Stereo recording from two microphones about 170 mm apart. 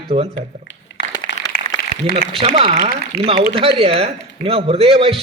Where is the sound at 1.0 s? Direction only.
70° left (ahead or behind).